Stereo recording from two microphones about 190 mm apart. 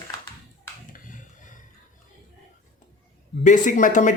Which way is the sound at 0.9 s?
45° left (ahead or behind).